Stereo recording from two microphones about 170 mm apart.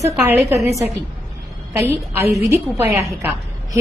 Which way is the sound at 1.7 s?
10° right (ahead or behind).